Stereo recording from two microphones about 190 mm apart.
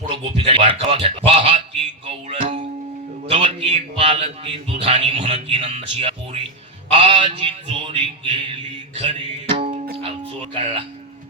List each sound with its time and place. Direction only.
0.1 s a man's voice: 30° right (ahead or behind)
2.0 s music: 30° right (ahead or behind)
3.2 s a man's voice: 30° right (ahead or behind)
9.0 s music: 30° right (ahead or behind)
9.6 s music: 55° right (ahead or behind)
10.0 s music: 30° right (ahead or behind)